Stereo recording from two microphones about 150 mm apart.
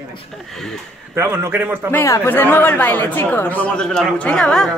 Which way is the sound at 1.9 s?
15° left (ahead or behind).